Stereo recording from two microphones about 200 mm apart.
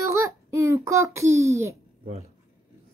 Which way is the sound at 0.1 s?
15° right (ahead or behind).